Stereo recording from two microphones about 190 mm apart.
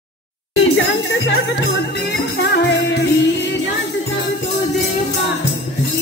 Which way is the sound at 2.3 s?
60° left (ahead or behind).